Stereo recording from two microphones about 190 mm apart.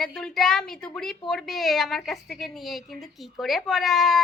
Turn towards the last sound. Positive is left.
turn(degrees=0)  # may be behind; listen again after turning